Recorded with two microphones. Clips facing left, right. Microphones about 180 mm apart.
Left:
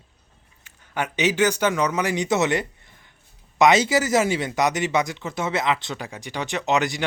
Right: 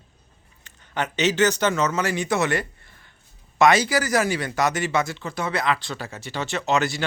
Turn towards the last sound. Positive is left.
turn(degrees=15)  # may be behind; listen again after turning